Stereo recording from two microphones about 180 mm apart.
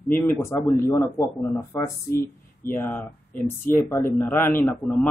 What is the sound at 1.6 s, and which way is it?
Speech, 20° left (ahead or behind).